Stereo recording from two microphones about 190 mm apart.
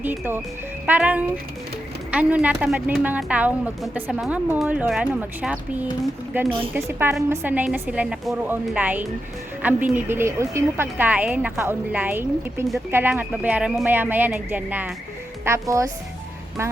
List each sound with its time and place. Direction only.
0.0 s a woman's voice: 10° right (ahead or behind)